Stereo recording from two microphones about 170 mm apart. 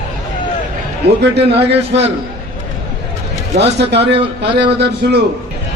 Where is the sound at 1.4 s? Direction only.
35° right (ahead or behind).